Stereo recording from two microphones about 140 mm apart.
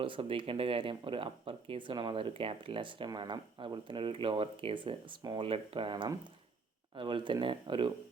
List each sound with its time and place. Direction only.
0.0 s speech: 40° right (ahead or behind)